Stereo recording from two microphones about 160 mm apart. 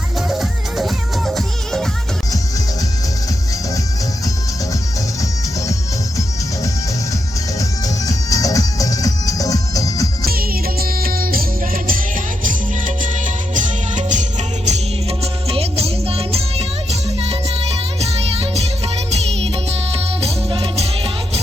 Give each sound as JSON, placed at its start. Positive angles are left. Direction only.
{"t": 0.3, "sound": "music", "side_deg": 0}
{"t": 7.6, "sound": "music", "side_deg": 20}
{"t": 10.2, "sound": "music", "side_deg": -70}